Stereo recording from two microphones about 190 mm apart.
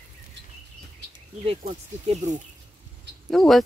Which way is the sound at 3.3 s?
Centre (ahead or behind).